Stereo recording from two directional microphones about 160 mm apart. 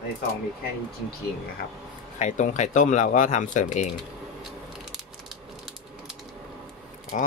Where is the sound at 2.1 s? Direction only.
50° left (ahead or behind).